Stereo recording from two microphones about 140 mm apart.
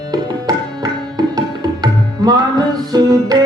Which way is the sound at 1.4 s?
30° right (ahead or behind).